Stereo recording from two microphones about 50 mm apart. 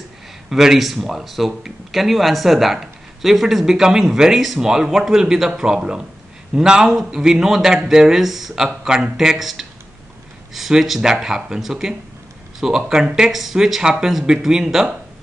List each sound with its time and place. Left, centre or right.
0.5 s speech: centre
8.6 s speech: centre